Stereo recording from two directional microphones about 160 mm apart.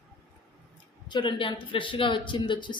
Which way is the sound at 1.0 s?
30° left (ahead or behind).